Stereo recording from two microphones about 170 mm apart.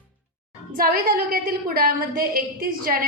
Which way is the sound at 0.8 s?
60° right (ahead or behind).